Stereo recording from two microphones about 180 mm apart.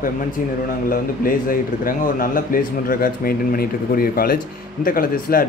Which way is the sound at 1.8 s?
50° left (ahead or behind).